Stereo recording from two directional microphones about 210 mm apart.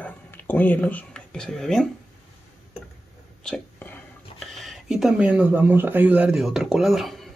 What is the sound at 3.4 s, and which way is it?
Speech, 5° left (ahead or behind).